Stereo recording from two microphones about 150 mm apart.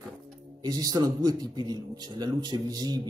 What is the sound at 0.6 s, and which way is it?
Speech, 25° right (ahead or behind).